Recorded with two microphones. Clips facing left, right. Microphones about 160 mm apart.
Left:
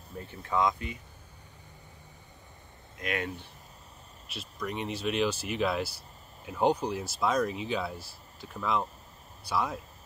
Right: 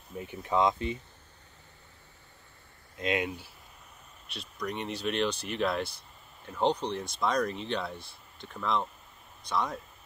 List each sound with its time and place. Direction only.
0.1 s speech: 10° right (ahead or behind)
3.0 s speech: 20° right (ahead or behind)
4.3 s speech: centre (ahead or behind)